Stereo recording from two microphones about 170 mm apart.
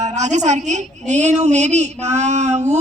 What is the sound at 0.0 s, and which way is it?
A woman's voice, 45° right (ahead or behind).